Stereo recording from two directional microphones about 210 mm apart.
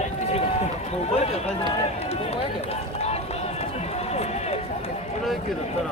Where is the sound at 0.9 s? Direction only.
30° left (ahead or behind).